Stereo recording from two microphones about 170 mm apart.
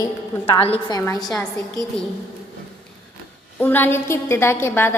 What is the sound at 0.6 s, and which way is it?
Speech, 35° left (ahead or behind).